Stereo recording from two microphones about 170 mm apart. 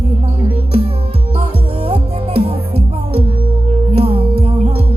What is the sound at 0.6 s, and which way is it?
Music, 35° right (ahead or behind).